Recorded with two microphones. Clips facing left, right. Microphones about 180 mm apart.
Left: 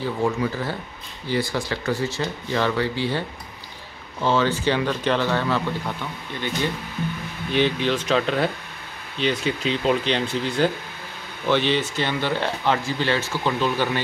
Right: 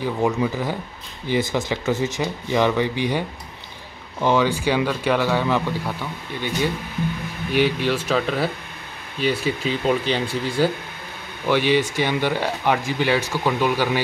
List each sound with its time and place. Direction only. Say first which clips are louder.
0.0 s speech: right 2 dB; 15° right (ahead or behind)